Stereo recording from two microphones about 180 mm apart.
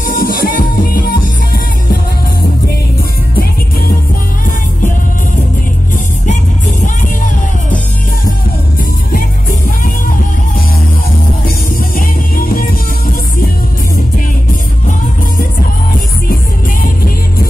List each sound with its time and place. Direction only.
0.0 s music: 50° left (ahead or behind)
11.4 s music: 50° left (ahead or behind)
16.8 s music: 55° left (ahead or behind)